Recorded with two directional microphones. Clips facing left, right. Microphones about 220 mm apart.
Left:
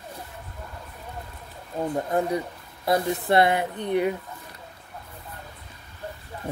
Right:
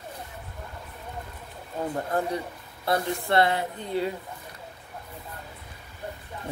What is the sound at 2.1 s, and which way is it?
Speech, 20° left (ahead or behind).